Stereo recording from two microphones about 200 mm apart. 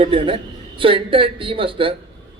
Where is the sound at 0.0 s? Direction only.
25° right (ahead or behind).